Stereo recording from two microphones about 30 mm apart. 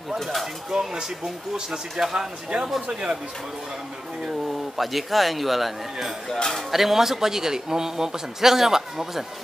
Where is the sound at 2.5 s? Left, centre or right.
Right.